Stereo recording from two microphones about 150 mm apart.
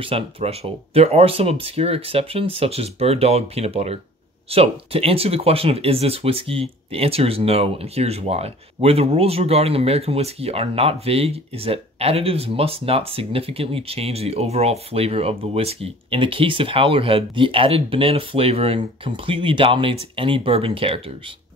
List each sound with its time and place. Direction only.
0.0 s speech: 40° right (ahead or behind)